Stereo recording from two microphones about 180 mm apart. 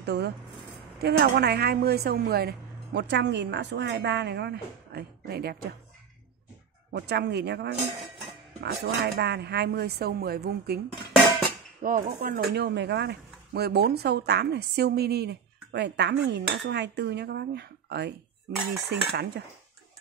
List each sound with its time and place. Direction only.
0.0 s speech: 70° right (ahead or behind)
1.0 s speech: 60° right (ahead or behind)
6.9 s speech: 65° right (ahead or behind)
8.8 s speech: 65° right (ahead or behind)
11.8 s speech: 50° right (ahead or behind); by 19.4 s 65° right (ahead or behind)